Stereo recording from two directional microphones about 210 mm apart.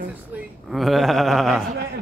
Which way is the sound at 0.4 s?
Centre (ahead or behind).